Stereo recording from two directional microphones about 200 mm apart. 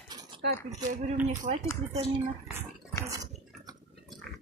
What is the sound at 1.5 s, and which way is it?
Speech, 40° right (ahead or behind).